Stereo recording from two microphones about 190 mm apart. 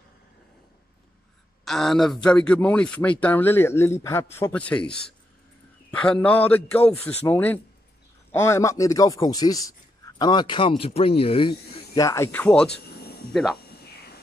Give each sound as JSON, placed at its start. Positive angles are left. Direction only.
{"t": 1.6, "sound": "speech", "side_deg": 0}
{"t": 12.7, "sound": "a sound", "side_deg": 55}
{"t": 13.3, "sound": "speech", "side_deg": 0}